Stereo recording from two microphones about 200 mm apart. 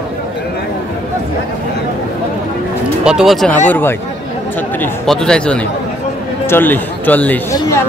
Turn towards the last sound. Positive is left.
turn(degrees=10)  # may be behind; listen again after turning